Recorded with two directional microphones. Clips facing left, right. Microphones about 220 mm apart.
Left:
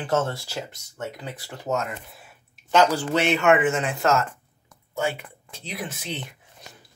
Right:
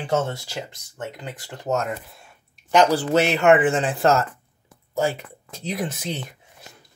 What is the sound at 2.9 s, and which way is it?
Speech, 40° right (ahead or behind).